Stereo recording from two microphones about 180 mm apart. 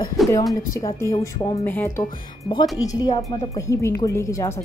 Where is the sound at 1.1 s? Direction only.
20° left (ahead or behind).